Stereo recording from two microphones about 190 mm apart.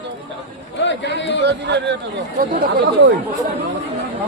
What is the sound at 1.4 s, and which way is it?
Speech, 65° right (ahead or behind).